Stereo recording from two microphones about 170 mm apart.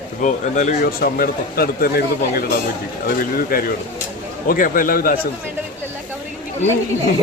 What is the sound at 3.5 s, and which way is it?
Speech, 60° left (ahead or behind).